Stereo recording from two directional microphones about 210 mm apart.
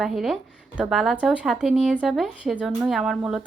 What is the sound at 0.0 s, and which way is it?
Speech, centre (ahead or behind).